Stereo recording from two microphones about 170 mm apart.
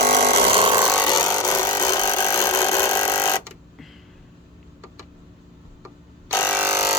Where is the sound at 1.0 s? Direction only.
20° left (ahead or behind).